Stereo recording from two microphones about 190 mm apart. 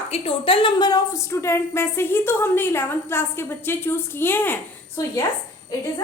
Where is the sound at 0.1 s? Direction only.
30° left (ahead or behind); by 5.2 s 15° left (ahead or behind).